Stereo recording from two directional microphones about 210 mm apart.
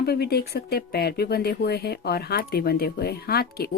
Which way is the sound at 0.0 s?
50° left (ahead or behind).